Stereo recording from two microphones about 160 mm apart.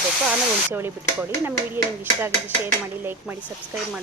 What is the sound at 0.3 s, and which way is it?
Speech, 15° right (ahead or behind).